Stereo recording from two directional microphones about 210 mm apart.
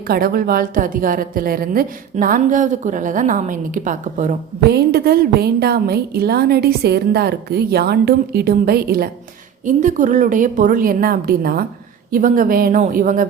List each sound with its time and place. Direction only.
0.1 s a woman's voice: 45° right (ahead or behind)
4.7 s a woman's voice: 50° right (ahead or behind)